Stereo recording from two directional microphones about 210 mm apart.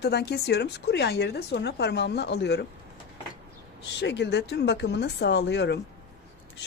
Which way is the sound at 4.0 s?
55° left (ahead or behind).